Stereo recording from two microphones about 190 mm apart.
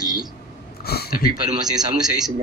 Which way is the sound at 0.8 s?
55° left (ahead or behind).